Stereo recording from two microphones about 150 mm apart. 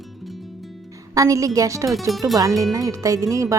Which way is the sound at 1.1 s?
20° right (ahead or behind).